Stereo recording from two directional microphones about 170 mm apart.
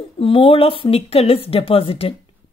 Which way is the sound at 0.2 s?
30° left (ahead or behind).